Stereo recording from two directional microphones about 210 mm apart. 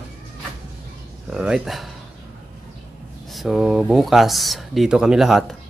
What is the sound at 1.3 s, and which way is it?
Speech, 5° right (ahead or behind).